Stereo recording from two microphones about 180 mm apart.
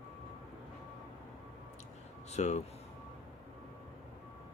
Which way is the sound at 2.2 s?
40° left (ahead or behind).